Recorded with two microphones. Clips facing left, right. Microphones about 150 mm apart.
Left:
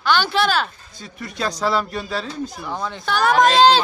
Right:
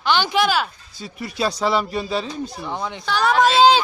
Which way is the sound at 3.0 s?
Centre (ahead or behind).